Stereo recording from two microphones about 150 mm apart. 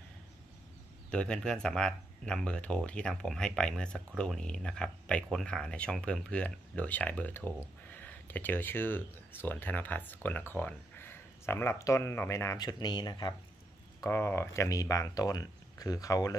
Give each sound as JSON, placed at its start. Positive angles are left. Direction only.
{"t": 1.1, "sound": "speech", "side_deg": 5}
{"t": 14.0, "sound": "speech", "side_deg": 15}